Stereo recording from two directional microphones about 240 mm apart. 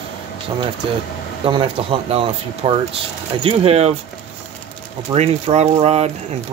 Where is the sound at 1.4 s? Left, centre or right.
Right.